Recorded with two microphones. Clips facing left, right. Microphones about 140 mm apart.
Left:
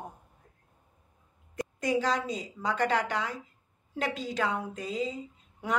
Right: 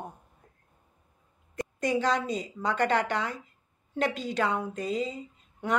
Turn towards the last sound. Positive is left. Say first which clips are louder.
# right 2 dB
turn(degrees=5)  # may be behind; listen again after turning